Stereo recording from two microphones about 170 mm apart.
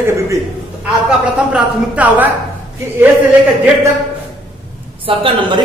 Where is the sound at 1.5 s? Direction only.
10° right (ahead or behind).